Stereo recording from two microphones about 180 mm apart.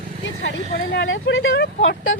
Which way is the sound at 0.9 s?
90° left.